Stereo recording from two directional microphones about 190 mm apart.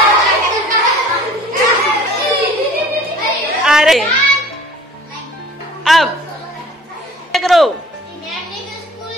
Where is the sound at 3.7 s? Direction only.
Centre (ahead or behind).